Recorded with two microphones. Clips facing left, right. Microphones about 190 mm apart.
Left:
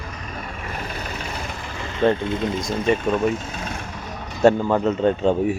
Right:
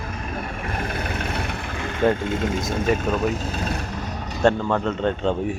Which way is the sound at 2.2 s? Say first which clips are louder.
Even; 45° right (ahead or behind).